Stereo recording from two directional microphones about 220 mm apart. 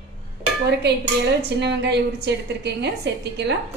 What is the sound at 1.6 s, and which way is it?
A woman's voice, 50° right (ahead or behind).